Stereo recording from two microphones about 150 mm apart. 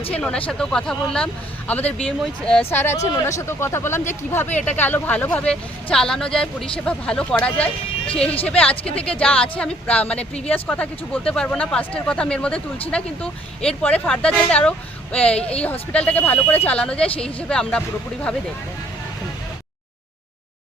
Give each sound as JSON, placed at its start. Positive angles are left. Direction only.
{"t": 0.1, "sound": "speech", "side_deg": 5}